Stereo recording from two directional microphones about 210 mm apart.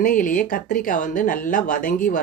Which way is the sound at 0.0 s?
40° left (ahead or behind).